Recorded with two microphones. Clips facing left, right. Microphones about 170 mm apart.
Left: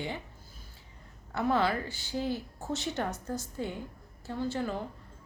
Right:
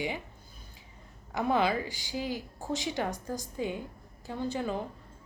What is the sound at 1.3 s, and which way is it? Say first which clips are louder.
A woman's voice: right 1 dB; 15° right (ahead or behind).